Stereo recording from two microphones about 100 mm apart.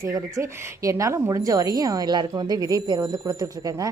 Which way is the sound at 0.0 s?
30° right (ahead or behind).